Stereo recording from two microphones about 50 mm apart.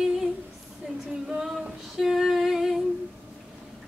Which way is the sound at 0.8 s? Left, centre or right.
Centre.